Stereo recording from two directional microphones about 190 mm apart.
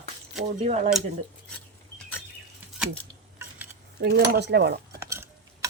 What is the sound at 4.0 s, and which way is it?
Speech, 65° right (ahead or behind).